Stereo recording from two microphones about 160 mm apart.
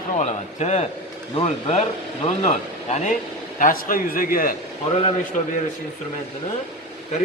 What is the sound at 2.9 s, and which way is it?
Speech, 50° left (ahead or behind).